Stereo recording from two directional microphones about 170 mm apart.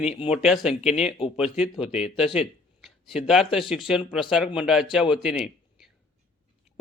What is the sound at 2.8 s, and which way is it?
Speech, centre (ahead or behind).